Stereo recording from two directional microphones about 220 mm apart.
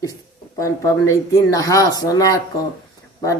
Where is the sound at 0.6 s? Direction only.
15° left (ahead or behind).